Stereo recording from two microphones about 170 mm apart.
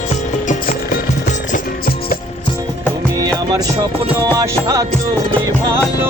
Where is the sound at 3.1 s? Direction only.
20° right (ahead or behind).